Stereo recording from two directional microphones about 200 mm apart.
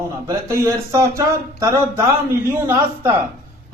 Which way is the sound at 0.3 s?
15° right (ahead or behind).